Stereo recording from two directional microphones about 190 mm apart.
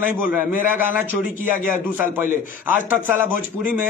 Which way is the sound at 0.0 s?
10° right (ahead or behind).